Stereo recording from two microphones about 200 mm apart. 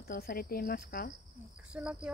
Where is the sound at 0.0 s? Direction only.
45° left (ahead or behind).